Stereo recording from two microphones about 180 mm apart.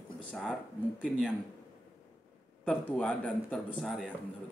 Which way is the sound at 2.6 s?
5° left (ahead or behind).